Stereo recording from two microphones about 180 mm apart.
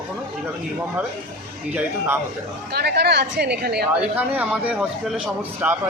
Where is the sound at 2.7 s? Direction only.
65° right (ahead or behind).